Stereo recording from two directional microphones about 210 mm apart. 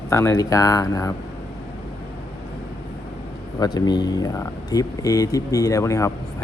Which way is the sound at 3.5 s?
20° left (ahead or behind).